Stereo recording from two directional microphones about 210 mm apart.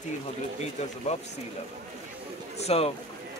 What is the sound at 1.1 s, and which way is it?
Speech, 30° left (ahead or behind).